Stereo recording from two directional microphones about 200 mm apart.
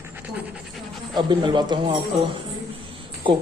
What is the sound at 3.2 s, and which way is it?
Speech, 25° right (ahead or behind).